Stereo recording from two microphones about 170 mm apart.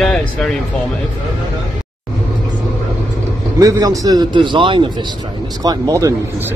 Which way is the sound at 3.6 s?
20° right (ahead or behind).